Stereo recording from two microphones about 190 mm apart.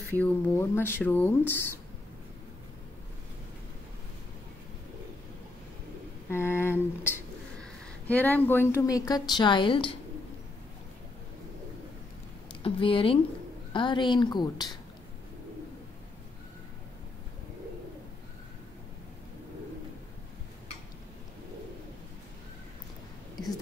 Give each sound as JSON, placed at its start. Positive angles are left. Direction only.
{"t": 0.1, "sound": "speech", "side_deg": 10}
{"t": 6.3, "sound": "a woman's voice", "side_deg": 10}
{"t": 12.6, "sound": "a woman's voice", "side_deg": 30}